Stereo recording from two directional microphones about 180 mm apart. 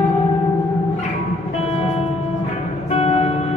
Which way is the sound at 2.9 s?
35° left (ahead or behind).